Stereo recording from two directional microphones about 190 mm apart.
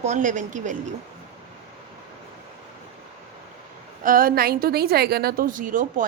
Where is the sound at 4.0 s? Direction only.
50° right (ahead or behind).